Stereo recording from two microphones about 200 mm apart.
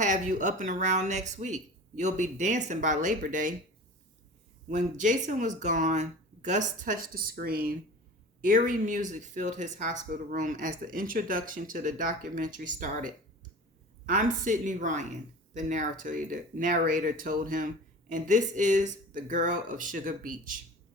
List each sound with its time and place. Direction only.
0.0 s speech: 40° right (ahead or behind)
4.7 s speech: 40° right (ahead or behind)